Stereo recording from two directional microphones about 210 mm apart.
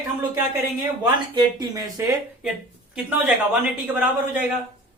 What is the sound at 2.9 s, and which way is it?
Speech, 5° right (ahead or behind).